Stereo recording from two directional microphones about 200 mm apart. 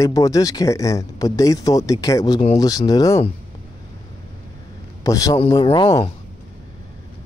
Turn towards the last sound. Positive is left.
turn(degrees=20)  # may be behind; listen again after turning